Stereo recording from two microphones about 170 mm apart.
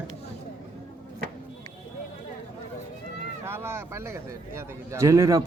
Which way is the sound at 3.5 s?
15° right (ahead or behind).